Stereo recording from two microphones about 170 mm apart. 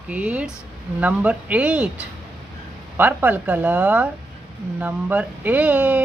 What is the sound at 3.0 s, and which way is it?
A woman's voice, 10° right (ahead or behind).